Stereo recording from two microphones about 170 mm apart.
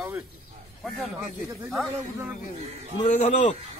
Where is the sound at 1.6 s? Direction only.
Centre (ahead or behind).